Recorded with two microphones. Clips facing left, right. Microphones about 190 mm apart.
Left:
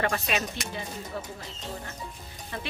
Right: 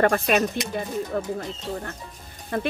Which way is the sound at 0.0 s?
50° right (ahead or behind).